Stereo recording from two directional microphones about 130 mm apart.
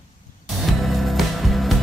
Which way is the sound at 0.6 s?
Centre (ahead or behind).